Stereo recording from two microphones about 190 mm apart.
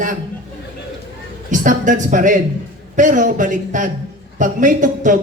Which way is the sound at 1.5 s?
40° right (ahead or behind).